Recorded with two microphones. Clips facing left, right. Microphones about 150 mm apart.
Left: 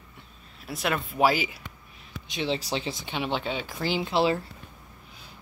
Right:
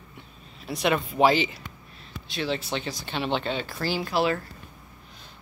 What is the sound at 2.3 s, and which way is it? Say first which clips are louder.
Speech: even; 25° left (ahead or behind).